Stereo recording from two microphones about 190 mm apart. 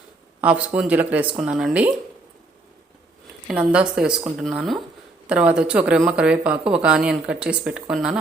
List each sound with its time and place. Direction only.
0.4 s speech: 5° right (ahead or behind)
3.5 s speech: 5° right (ahead or behind)